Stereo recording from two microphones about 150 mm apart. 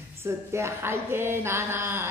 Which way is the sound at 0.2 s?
15° right (ahead or behind).